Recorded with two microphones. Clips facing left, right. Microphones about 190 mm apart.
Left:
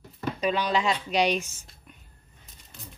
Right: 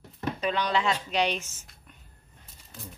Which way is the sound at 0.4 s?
10° left (ahead or behind).